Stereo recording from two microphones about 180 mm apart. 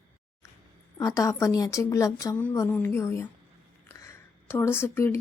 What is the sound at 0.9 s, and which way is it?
Speech, 15° left (ahead or behind).